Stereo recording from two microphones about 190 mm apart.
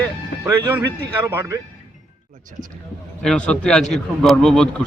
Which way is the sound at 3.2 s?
5° left (ahead or behind).